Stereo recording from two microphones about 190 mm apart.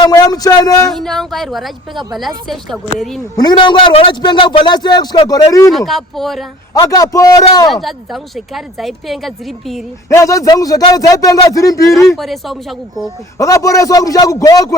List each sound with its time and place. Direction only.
0.0 s a man's voice: 20° left (ahead or behind)
0.9 s speech: centre (ahead or behind)
3.3 s a man's voice: 25° left (ahead or behind)
5.7 s speech: centre (ahead or behind)
6.7 s a man's voice: 20° left (ahead or behind)
7.7 s speech: centre (ahead or behind)
10.1 s speech: 15° left (ahead or behind)
12.1 s speech: centre (ahead or behind)
13.4 s speech: 15° left (ahead or behind)